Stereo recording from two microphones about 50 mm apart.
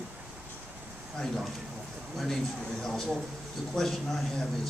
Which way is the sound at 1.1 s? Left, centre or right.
Centre.